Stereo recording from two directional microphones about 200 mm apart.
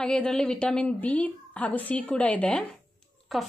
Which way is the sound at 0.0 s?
5° left (ahead or behind).